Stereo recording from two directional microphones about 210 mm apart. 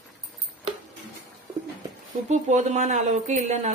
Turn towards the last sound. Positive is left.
turn(degrees=-30)  # may be behind; listen again after turning